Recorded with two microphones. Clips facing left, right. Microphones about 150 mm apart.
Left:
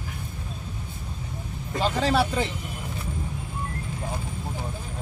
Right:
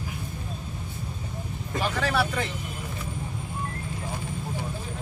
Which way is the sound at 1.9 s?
30° left (ahead or behind).